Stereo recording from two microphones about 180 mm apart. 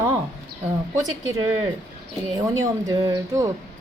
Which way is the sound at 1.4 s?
20° right (ahead or behind).